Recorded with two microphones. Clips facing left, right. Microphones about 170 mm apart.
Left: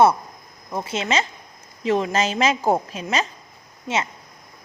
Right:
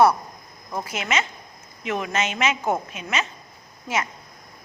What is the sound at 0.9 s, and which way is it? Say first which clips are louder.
A woman's voice: left 4 dB; 30° left (ahead or behind).